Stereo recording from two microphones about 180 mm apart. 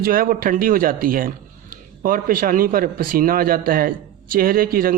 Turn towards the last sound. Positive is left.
turn(degrees=-55)  # may be behind; listen again after turning